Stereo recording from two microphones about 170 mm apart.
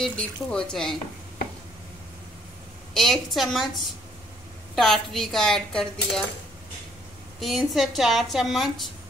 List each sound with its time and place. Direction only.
0.0 s a woman's voice: 5° left (ahead or behind)
2.9 s a woman's voice: centre (ahead or behind)
7.3 s a woman's voice: centre (ahead or behind)